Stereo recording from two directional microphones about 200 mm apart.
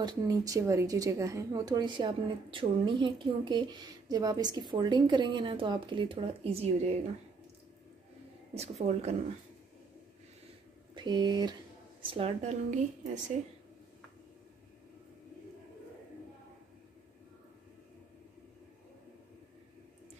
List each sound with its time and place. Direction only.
0.0 s speech: 20° right (ahead or behind)
8.5 s a woman's voice: 30° right (ahead or behind)
11.0 s a woman's voice: 20° right (ahead or behind); by 13.2 s 35° right (ahead or behind)